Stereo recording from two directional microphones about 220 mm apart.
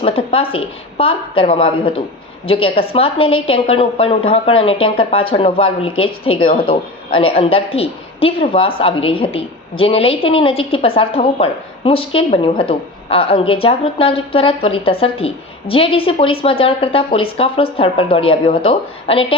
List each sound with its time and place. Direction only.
0.0 s a woman's voice: 25° left (ahead or behind)